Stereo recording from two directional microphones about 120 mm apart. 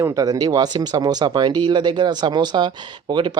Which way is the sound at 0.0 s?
30° right (ahead or behind).